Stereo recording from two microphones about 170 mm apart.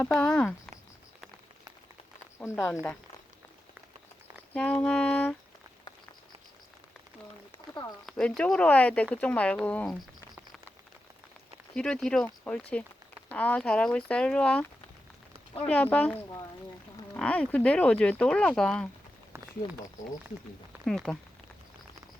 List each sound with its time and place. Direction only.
0.0 s speech: 5° left (ahead or behind)
2.4 s a sound: 10° left (ahead or behind)
4.5 s a sound: 5° left (ahead or behind)
7.7 s speech: 25° left (ahead or behind)
8.0 s speech: centre (ahead or behind)
11.7 s speech: 5° left (ahead or behind)
15.6 s a sound: 10° left (ahead or behind)
17.2 s speech: 5° left (ahead or behind)
20.8 s speech: 5° left (ahead or behind)